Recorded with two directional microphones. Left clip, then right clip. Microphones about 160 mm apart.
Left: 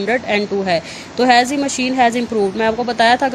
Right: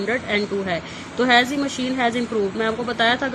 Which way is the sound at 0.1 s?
40° left (ahead or behind).